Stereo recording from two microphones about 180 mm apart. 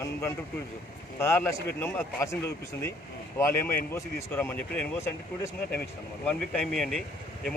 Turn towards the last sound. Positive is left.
turn(degrees=5)  # may be behind; listen again after turning